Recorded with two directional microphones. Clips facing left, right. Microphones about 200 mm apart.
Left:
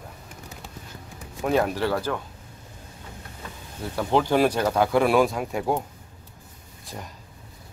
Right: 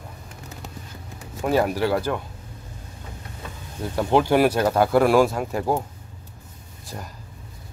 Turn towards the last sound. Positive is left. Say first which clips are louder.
# right 1 dB
turn(degrees=5)  # may be behind; listen again after turning